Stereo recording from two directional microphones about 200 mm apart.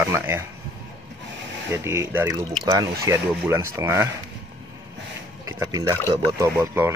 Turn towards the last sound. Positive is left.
turn(degrees=-10)  # may be behind; listen again after turning